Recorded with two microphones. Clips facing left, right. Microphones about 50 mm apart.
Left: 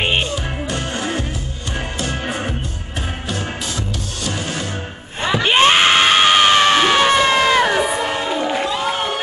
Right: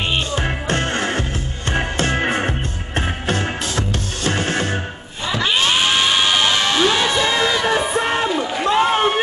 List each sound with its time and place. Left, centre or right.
0.4 s music: right
5.4 s screaming: left
8.0 s a sound: right